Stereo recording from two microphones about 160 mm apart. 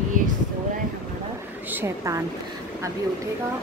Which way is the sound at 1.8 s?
20° right (ahead or behind).